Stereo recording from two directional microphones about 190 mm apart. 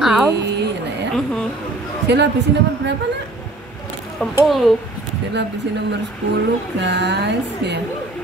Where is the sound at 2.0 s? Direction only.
65° right (ahead or behind).